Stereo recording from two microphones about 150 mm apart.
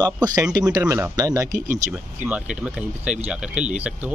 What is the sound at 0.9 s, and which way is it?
Speech, 25° right (ahead or behind).